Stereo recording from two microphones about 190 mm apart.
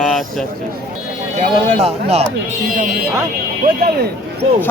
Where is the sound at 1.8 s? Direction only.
30° right (ahead or behind).